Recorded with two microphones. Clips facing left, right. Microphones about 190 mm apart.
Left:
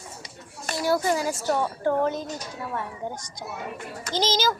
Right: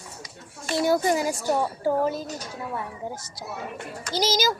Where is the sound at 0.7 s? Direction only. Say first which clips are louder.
Right 2 dB; 20° right (ahead or behind).